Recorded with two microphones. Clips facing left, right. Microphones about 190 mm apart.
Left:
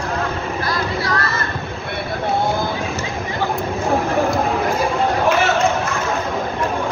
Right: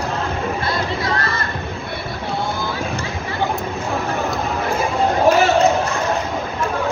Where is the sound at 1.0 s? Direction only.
25° right (ahead or behind).